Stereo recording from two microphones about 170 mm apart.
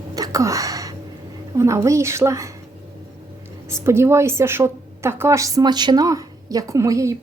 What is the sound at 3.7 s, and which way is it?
A woman's voice, 15° right (ahead or behind).